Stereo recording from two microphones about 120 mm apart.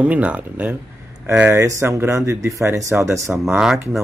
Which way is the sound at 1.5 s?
25° right (ahead or behind).